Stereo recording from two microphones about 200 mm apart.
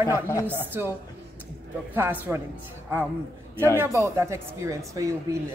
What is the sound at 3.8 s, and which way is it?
Speech, 15° right (ahead or behind).